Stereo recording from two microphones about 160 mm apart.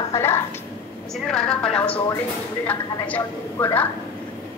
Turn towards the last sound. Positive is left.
turn(degrees=10)  # may be behind; listen again after turning